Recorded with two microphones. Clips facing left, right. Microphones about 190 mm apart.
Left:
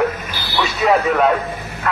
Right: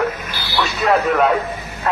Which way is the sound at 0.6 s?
5° left (ahead or behind).